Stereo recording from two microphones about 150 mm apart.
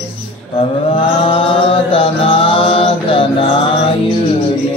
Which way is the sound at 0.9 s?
35° left (ahead or behind).